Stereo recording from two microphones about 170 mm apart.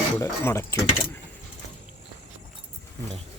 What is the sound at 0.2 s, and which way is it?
Speech, 15° left (ahead or behind).